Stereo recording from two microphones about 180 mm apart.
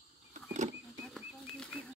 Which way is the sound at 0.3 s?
40° right (ahead or behind).